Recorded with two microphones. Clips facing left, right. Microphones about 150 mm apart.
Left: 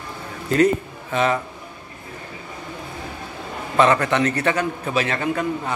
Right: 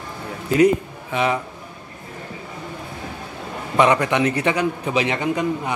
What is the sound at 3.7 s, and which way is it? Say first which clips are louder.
A man's voice: even; 15° right (ahead or behind).